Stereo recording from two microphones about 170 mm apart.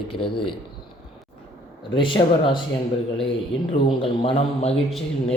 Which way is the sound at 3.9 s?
30° left (ahead or behind).